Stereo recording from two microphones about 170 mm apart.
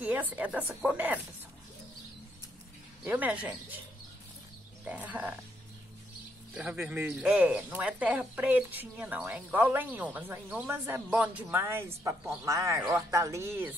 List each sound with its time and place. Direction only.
0.0 s speech: 10° right (ahead or behind)
3.0 s speech: 10° right (ahead or behind)
4.8 s speech: 10° right (ahead or behind)
6.5 s speech: 5° right (ahead or behind)